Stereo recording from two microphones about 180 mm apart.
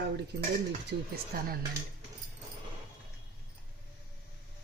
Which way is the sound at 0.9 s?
55° right (ahead or behind).